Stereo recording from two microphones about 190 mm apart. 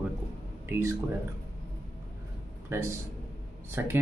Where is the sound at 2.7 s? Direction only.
15° right (ahead or behind).